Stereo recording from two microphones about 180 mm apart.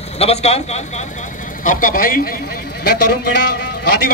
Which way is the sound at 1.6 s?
50° left (ahead or behind).